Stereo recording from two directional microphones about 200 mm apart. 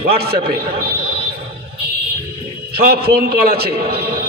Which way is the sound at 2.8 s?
50° right (ahead or behind).